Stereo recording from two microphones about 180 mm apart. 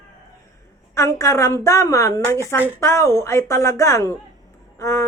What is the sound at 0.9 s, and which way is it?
A woman's voice, 15° left (ahead or behind).